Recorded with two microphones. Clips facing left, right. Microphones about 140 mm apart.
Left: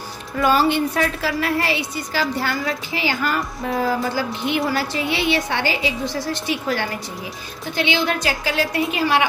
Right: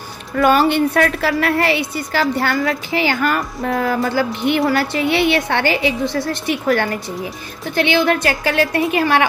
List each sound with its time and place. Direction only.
0.4 s a woman's voice: 60° right (ahead or behind)